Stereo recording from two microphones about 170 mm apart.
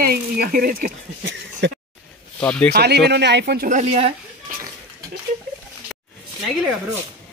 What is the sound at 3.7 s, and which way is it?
Speech, 40° right (ahead or behind).